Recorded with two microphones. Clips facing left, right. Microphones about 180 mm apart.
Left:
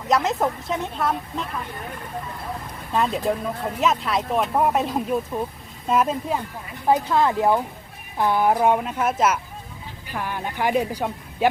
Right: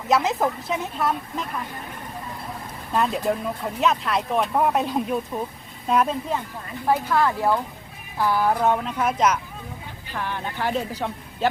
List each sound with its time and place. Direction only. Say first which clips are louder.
0.1 s speech: even; centre (ahead or behind)
2.9 s speech: even; centre (ahead or behind)
6.8 s speech: left 2 dB; 20° left (ahead or behind)